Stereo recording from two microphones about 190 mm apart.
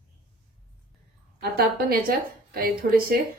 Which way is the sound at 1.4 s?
55° right (ahead or behind).